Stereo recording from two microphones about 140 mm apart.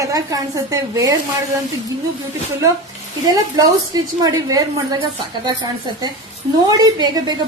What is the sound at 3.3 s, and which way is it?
A woman's voice, 25° right (ahead or behind).